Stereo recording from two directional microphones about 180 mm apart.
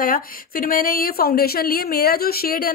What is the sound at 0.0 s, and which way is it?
Speech, 50° left (ahead or behind).